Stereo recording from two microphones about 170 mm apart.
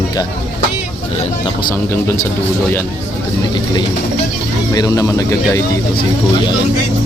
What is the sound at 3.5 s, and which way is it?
Speech, 25° left (ahead or behind).